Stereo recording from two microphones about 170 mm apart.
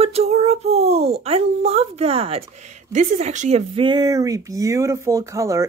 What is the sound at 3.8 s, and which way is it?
Speech, 25° right (ahead or behind).